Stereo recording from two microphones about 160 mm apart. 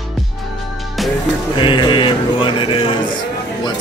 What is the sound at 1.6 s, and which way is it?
Mantra, 30° left (ahead or behind).